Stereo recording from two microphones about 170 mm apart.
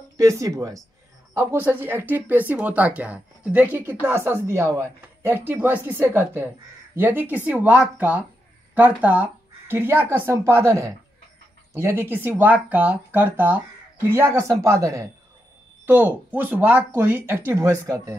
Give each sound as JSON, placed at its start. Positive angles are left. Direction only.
{"t": 0.2, "sound": "speech", "side_deg": -20}